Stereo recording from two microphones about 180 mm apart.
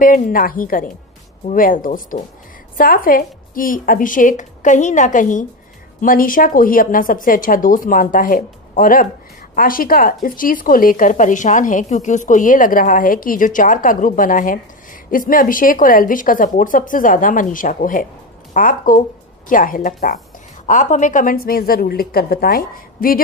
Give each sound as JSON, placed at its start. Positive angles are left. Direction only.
{"t": 0.0, "sound": "a woman's voice", "side_deg": 50}